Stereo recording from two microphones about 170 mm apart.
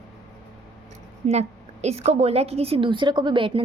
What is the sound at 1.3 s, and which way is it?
A woman's voice, 40° right (ahead or behind).